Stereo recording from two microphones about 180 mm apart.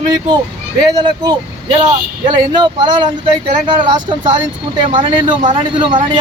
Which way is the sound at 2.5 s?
25° right (ahead or behind).